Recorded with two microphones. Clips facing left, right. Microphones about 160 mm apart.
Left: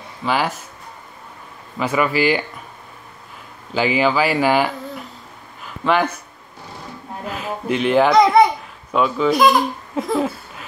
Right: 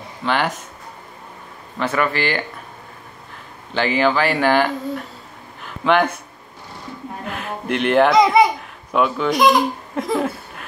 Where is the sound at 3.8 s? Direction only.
5° left (ahead or behind).